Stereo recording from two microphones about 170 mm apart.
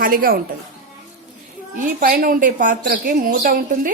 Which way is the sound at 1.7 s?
55° right (ahead or behind).